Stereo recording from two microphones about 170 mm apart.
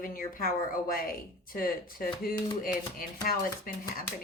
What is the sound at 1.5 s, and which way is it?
Speech, 55° left (ahead or behind).